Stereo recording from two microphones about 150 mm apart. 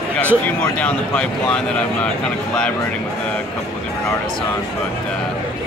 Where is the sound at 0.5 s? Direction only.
10° left (ahead or behind).